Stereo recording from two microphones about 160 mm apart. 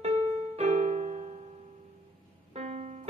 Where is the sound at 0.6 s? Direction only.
40° right (ahead or behind).